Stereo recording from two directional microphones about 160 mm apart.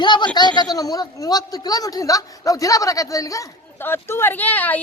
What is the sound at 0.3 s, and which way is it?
Speech, 25° left (ahead or behind).